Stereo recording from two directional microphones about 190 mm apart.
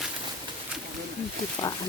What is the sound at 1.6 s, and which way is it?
Speech, 20° left (ahead or behind).